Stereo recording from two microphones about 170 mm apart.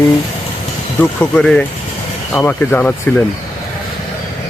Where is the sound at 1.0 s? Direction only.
5° left (ahead or behind).